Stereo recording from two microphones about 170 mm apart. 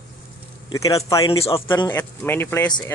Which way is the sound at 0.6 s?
20° left (ahead or behind).